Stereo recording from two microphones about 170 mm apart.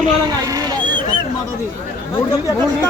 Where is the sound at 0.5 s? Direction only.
20° right (ahead or behind).